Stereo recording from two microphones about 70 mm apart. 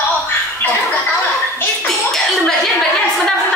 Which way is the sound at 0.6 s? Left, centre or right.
Left.